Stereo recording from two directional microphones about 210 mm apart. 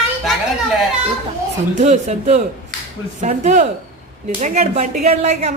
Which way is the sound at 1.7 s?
35° right (ahead or behind).